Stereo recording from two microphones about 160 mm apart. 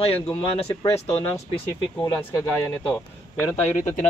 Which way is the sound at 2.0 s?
25° left (ahead or behind).